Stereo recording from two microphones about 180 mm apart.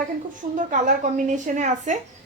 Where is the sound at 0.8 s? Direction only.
45° right (ahead or behind).